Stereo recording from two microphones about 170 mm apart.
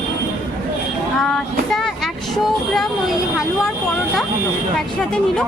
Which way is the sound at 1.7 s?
Centre (ahead or behind).